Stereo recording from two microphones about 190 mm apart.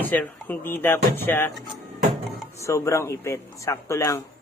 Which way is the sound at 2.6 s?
15° left (ahead or behind).